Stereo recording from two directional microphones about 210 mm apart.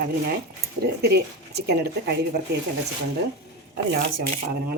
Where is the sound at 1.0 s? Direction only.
50° right (ahead or behind).